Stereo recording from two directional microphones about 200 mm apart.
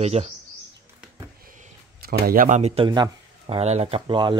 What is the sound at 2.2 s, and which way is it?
Speech, 40° right (ahead or behind).